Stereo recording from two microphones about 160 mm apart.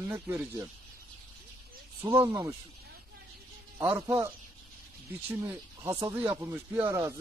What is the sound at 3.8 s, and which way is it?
Speech, 15° right (ahead or behind).